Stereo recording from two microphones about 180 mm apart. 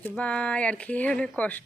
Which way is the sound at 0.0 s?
5° left (ahead or behind).